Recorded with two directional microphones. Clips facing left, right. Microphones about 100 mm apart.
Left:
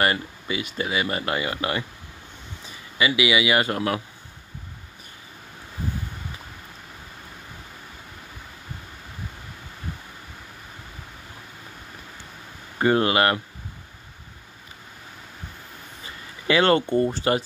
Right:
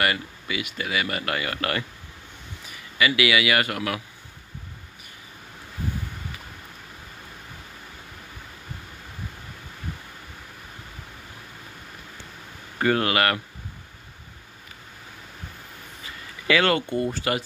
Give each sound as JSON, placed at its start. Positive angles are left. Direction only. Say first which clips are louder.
{"t": 0.0, "sound": "speech", "louder": "left 2 dB", "side_deg": 30}
{"t": 12.7, "sound": "speech", "louder": "left 2 dB", "side_deg": 25}
{"t": 16.4, "sound": "speech", "louder": "left 2 dB", "side_deg": 30}